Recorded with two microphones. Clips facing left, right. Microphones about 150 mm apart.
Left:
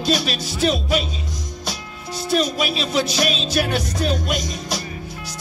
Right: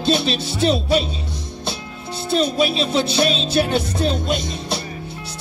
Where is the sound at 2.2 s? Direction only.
30° right (ahead or behind).